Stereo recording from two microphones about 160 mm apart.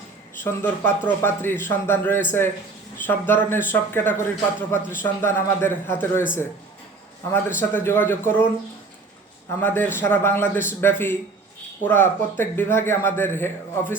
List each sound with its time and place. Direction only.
0.4 s a man's voice: 10° left (ahead or behind)
7.3 s a man's voice: 15° left (ahead or behind)
9.6 s a man's voice: 10° left (ahead or behind)